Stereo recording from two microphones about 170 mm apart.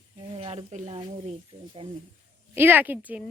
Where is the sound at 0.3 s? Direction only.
40° right (ahead or behind).